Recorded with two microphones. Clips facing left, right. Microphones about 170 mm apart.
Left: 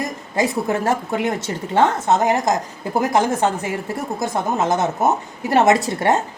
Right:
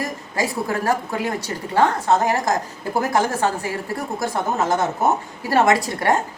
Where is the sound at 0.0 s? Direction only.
20° left (ahead or behind).